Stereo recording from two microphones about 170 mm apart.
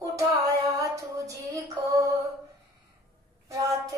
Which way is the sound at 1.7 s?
20° right (ahead or behind).